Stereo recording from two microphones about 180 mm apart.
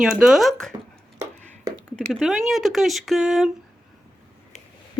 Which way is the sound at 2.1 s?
Centre (ahead or behind).